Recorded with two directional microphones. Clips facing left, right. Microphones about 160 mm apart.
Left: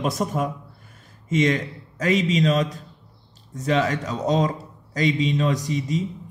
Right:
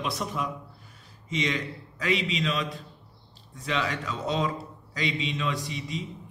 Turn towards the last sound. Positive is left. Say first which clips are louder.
# left 8 dB
turn(degrees=45)  # may be behind; listen again after turning